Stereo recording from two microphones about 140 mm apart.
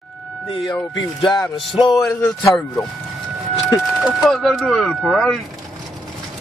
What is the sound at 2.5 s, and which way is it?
Speech, 5° left (ahead or behind).